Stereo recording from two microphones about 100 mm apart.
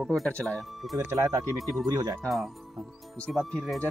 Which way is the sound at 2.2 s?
Centre (ahead or behind).